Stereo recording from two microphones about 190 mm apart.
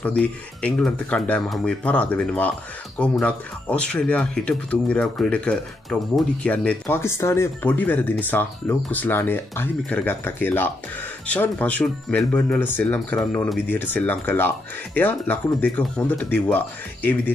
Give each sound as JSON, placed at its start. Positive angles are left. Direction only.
{"t": 0.0, "sound": "speech", "side_deg": 5}